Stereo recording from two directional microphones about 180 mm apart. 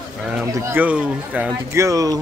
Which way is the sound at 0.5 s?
10° right (ahead or behind).